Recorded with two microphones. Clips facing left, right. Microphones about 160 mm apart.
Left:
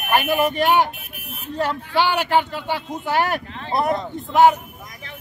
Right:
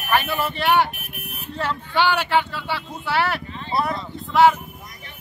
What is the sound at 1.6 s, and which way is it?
Speech, 40° left (ahead or behind).